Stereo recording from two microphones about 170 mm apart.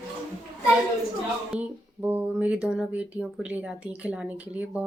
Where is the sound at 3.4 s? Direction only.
5° right (ahead or behind).